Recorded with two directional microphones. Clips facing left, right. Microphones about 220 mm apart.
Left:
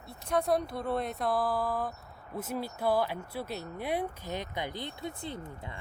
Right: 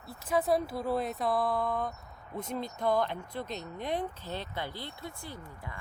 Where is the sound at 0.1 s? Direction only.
5° right (ahead or behind).